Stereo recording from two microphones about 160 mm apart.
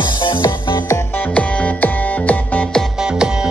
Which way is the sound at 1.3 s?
10° left (ahead or behind).